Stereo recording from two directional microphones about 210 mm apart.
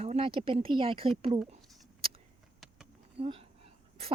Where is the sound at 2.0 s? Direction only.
25° right (ahead or behind).